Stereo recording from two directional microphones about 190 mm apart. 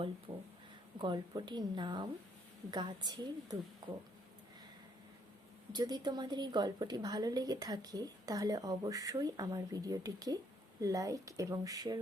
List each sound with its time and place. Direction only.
0.3 s a sound: 25° right (ahead or behind)
0.9 s a woman's voice: 25° right (ahead or behind)
5.7 s a woman's voice: 20° right (ahead or behind)